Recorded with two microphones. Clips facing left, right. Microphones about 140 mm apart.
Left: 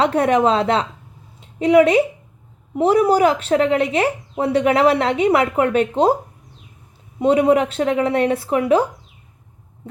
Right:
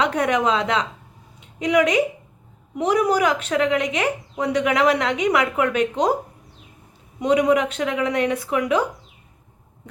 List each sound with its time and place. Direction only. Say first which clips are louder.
0.0 s a woman's voice: left 4 dB; 30° left (ahead or behind)
7.2 s a woman's voice: left 3 dB; 30° left (ahead or behind)